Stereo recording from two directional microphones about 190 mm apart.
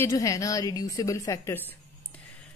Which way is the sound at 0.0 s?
15° left (ahead or behind).